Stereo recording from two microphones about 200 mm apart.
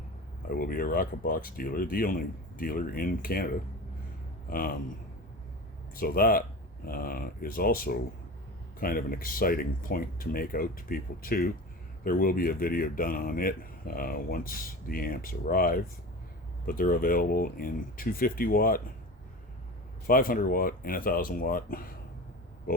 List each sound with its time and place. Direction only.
0.4 s speech: 45° left (ahead or behind)
6.0 s speech: 45° left (ahead or behind)
20.1 s speech: 45° left (ahead or behind)